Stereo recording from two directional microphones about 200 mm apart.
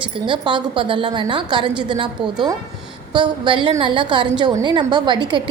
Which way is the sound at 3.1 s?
25° right (ahead or behind).